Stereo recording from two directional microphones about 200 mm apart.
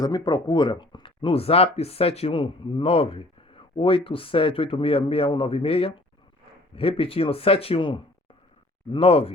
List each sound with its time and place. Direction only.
0.0 s speech: 20° left (ahead or behind)